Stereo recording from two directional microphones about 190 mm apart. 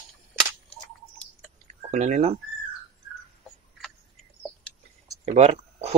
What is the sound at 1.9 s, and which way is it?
Speech, 40° right (ahead or behind).